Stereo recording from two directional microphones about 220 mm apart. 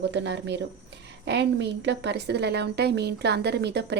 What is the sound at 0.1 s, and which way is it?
A woman's voice, 50° right (ahead or behind).